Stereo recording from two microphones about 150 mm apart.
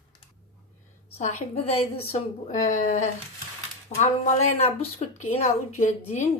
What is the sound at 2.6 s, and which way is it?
Speech, 55° left (ahead or behind).